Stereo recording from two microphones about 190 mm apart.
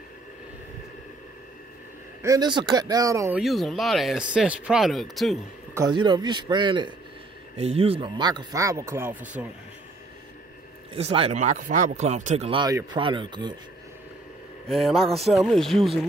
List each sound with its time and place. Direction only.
2.2 s speech: 20° right (ahead or behind)
3.3 s speech: centre (ahead or behind)
5.8 s speech: 20° right (ahead or behind)
11.0 s speech: 30° right (ahead or behind)
14.7 s speech: centre (ahead or behind)